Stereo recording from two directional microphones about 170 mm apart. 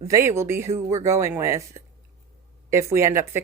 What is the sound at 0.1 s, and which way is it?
Speech, 15° right (ahead or behind).